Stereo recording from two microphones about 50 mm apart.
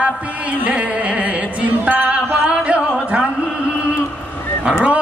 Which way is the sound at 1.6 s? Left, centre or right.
Right.